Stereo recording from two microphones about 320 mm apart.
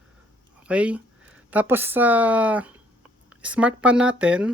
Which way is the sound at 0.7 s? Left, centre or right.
Centre.